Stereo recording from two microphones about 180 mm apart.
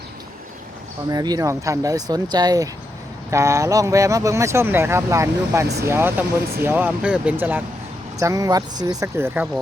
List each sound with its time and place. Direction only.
1.1 s speech: 20° right (ahead or behind)